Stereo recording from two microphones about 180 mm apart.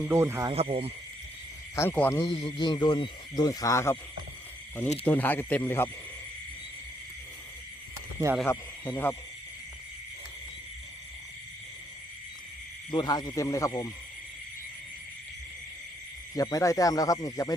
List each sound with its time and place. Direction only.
0.1 s speech: 15° right (ahead or behind)
0.5 s speech: 35° right (ahead or behind)
1.7 s speech: 10° left (ahead or behind)
2.2 s speech: 25° left (ahead or behind)
5.0 s speech: 10° left (ahead or behind)
8.4 s speech: 10° left (ahead or behind)
12.9 s speech: 25° left (ahead or behind)
16.3 s speech: 20° left (ahead or behind)